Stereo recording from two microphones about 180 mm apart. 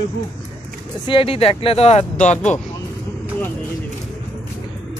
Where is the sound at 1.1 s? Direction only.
30° left (ahead or behind).